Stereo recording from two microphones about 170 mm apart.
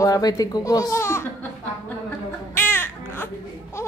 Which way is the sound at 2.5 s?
15° left (ahead or behind).